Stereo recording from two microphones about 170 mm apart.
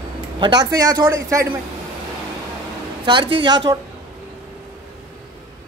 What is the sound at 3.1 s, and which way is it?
Speech, 30° right (ahead or behind).